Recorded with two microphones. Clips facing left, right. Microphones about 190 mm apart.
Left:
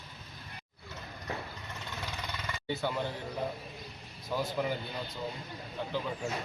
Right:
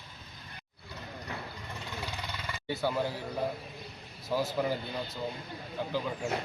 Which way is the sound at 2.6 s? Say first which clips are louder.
Right 2 dB; 5° right (ahead or behind).